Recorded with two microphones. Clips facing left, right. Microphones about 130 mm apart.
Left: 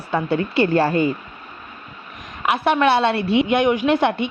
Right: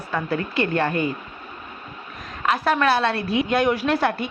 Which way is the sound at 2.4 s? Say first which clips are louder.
Left 3 dB; 15° left (ahead or behind).